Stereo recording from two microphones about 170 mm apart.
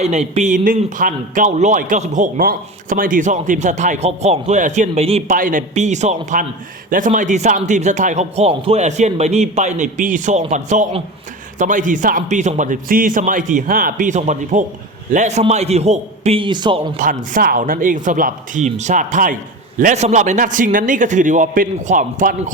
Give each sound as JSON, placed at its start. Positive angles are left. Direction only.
{"t": 0.0, "sound": "a man's voice", "side_deg": -40}
{"t": 5.4, "sound": "a man's voice", "side_deg": -50}
{"t": 17.0, "sound": "a man's voice", "side_deg": -50}